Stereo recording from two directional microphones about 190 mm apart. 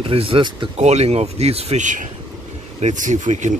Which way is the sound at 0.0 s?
30° right (ahead or behind).